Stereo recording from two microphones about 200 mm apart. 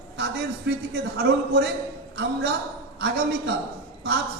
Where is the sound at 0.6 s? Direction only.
55° right (ahead or behind).